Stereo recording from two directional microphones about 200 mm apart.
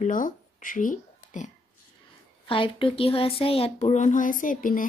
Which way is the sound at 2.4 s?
25° left (ahead or behind).